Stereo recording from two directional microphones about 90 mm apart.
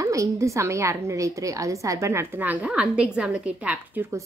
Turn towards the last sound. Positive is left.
turn(degrees=-10)  # may be behind; listen again after turning